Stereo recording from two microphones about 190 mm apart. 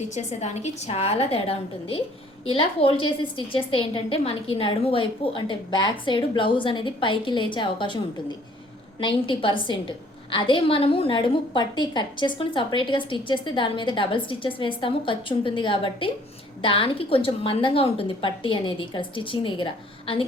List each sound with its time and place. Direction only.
0.1 s a woman's voice: 35° left (ahead or behind)
9.0 s a woman's voice: 25° left (ahead or behind)